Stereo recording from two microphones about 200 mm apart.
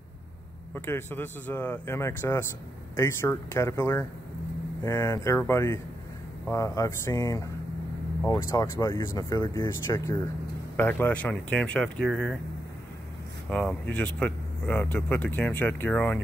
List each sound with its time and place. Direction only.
0.7 s speech: 10° left (ahead or behind)
13.5 s speech: 5° left (ahead or behind)